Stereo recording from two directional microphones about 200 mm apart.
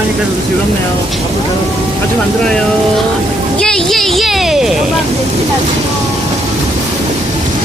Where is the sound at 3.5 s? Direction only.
5° left (ahead or behind).